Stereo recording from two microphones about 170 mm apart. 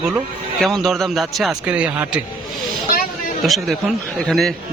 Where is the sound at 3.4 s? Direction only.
Centre (ahead or behind).